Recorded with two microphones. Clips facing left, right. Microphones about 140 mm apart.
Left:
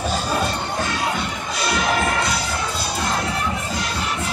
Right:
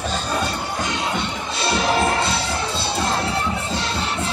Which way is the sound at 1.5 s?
30° right (ahead or behind).